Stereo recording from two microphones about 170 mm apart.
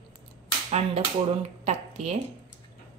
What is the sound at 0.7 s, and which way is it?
Speech, 40° right (ahead or behind).